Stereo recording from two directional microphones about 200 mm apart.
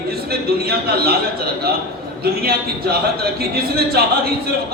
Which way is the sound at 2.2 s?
50° right (ahead or behind).